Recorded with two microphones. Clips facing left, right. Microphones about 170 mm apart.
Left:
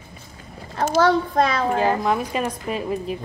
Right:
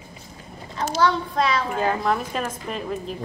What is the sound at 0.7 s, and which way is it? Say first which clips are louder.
A child's voice: left 4 dB; 50° left (ahead or behind).